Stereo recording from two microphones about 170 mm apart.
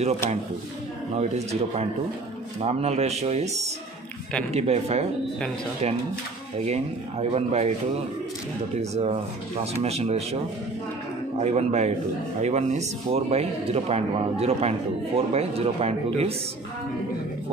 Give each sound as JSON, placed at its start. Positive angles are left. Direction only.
{"t": 1.1, "sound": "speech", "side_deg": -40}
{"t": 6.6, "sound": "speech", "side_deg": -40}
{"t": 8.9, "sound": "speech", "side_deg": -40}
{"t": 11.3, "sound": "speech", "side_deg": -40}